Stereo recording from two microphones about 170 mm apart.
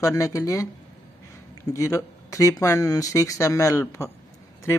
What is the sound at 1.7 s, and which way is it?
Speech, 20° left (ahead or behind).